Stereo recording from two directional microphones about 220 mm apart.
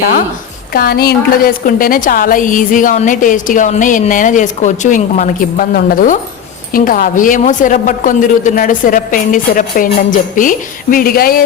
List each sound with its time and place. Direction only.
0.7 s a woman's voice: 45° left (ahead or behind)